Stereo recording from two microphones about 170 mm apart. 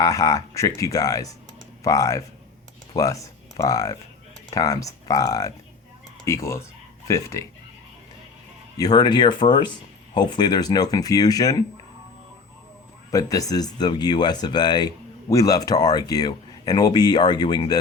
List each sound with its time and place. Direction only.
0.0 s speech: 20° left (ahead or behind)
8.8 s speech: 25° left (ahead or behind)
13.1 s speech: 20° left (ahead or behind)